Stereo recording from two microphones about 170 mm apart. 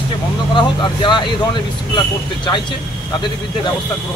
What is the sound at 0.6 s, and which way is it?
A man's voice, 25° left (ahead or behind).